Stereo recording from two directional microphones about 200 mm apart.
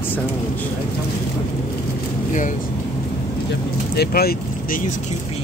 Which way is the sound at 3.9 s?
50° left (ahead or behind).